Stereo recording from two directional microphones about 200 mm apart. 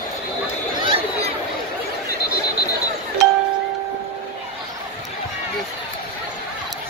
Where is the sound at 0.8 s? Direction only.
30° right (ahead or behind).